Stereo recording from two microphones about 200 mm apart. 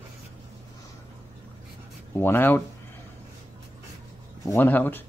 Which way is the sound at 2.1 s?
10° left (ahead or behind).